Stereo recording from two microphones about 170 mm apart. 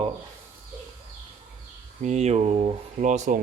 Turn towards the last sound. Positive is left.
turn(degrees=-45)  # may be behind; listen again after turning